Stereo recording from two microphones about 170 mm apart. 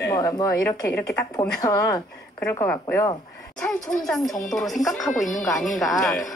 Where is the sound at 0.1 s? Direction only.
20° left (ahead or behind).